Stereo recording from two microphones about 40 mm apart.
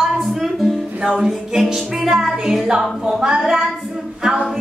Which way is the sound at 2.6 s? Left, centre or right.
Right.